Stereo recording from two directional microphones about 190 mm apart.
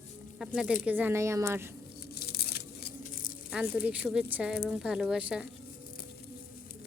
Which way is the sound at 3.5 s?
5° right (ahead or behind).